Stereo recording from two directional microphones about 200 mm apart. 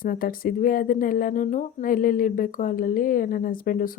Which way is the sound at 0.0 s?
45° left (ahead or behind).